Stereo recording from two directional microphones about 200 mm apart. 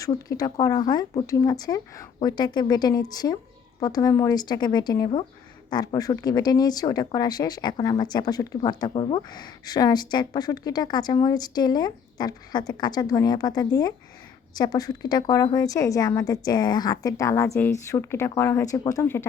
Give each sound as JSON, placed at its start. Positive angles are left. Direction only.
{"t": 0.0, "sound": "a woman's voice", "side_deg": 20}